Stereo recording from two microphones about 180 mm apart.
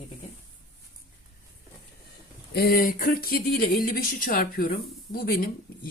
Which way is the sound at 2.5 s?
55° left (ahead or behind).